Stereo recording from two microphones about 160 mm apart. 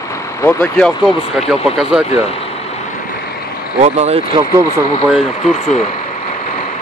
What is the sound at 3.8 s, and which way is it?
Speech, 45° right (ahead or behind).